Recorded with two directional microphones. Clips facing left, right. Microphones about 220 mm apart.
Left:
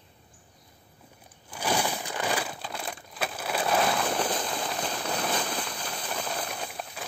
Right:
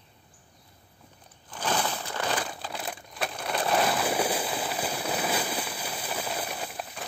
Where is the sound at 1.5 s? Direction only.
10° left (ahead or behind).